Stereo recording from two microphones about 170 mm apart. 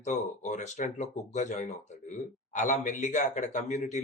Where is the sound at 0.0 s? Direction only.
45° left (ahead or behind).